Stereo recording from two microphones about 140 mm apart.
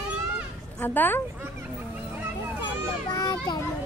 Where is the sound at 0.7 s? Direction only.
15° left (ahead or behind).